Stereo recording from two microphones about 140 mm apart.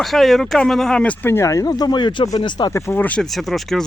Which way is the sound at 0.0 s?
Centre (ahead or behind).